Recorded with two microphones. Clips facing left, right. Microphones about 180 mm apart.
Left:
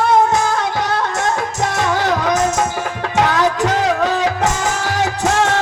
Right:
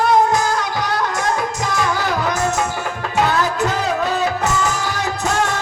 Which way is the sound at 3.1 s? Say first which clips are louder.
Left 2 dB; 90° left.